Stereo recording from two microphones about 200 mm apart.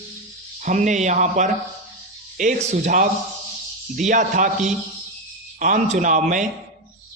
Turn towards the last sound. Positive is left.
turn(degrees=-40)  # may be behind; listen again after turning